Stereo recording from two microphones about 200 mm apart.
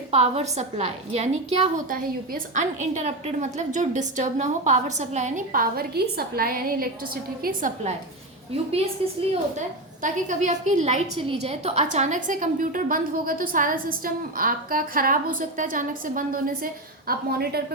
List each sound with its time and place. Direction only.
0.1 s a woman's voice: 30° right (ahead or behind)
9.6 s a woman's voice: 40° right (ahead or behind)